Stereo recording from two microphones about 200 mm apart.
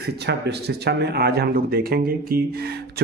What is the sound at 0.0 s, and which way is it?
Speech, 55° right (ahead or behind).